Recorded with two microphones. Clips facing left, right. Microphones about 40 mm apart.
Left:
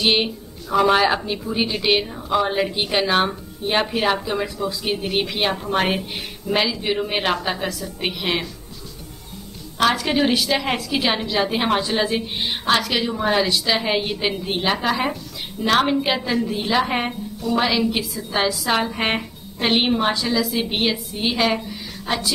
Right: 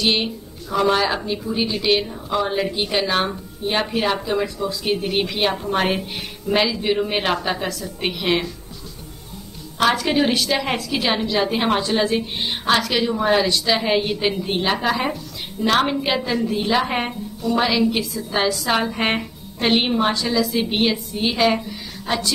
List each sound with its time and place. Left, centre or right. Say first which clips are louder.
0.0 s a woman's voice: left 1 dB; centre
9.8 s a woman's voice: right 1 dB; centre